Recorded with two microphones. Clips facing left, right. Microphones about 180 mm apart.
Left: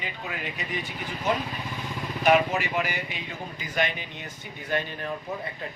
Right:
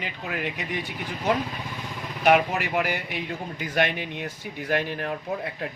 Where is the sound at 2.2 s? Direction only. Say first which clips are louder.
Right 1 dB; 60° right (ahead or behind).